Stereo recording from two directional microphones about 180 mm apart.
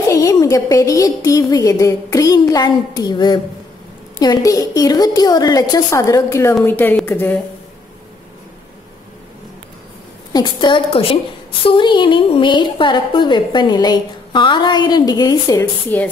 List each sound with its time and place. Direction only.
0.1 s a woman's voice: 20° left (ahead or behind)
10.3 s a woman's voice: 25° left (ahead or behind)